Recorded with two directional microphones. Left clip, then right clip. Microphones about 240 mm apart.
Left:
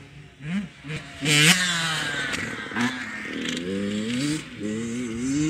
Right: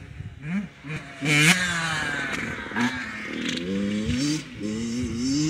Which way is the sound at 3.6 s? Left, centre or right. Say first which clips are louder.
Even; right.